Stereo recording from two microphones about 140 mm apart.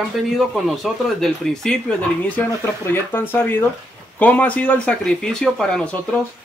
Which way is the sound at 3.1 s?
15° left (ahead or behind).